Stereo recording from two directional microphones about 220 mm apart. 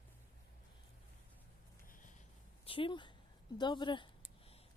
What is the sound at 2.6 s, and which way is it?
Speech, 25° left (ahead or behind).